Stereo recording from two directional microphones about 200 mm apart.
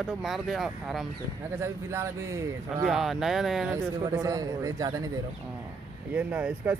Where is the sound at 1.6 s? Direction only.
15° right (ahead or behind).